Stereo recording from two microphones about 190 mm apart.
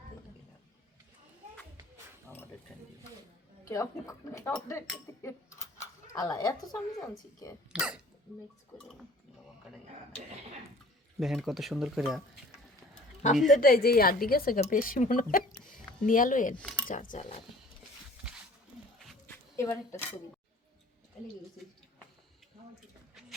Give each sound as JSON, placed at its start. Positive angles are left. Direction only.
{"t": 3.7, "sound": "speech", "side_deg": 15}
{"t": 5.2, "sound": "a sound", "side_deg": 15}
{"t": 7.7, "sound": "speech", "side_deg": -5}
{"t": 11.2, "sound": "speech", "side_deg": 0}
{"t": 13.5, "sound": "a woman's voice", "side_deg": 50}
{"t": 16.6, "sound": "speech", "side_deg": 5}
{"t": 16.9, "sound": "a woman's voice", "side_deg": 45}
{"t": 18.9, "sound": "a sound", "side_deg": 0}
{"t": 19.5, "sound": "speech", "side_deg": 15}